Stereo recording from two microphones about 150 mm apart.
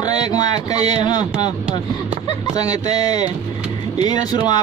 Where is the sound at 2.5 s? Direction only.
25° left (ahead or behind).